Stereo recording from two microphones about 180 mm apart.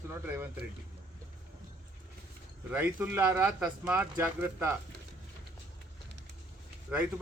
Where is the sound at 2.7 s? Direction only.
10° right (ahead or behind).